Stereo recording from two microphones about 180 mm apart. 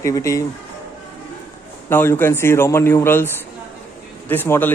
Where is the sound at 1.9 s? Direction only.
10° left (ahead or behind).